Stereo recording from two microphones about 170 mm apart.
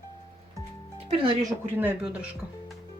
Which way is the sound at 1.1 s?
30° right (ahead or behind).